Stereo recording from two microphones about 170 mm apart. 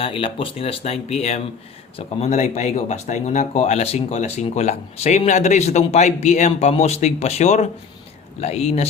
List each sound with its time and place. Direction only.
0.0 s speech: 35° left (ahead or behind)